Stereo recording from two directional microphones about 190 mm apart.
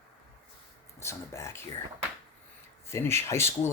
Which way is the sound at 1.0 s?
15° left (ahead or behind).